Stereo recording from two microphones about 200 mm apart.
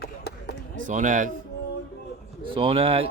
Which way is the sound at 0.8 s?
40° right (ahead or behind).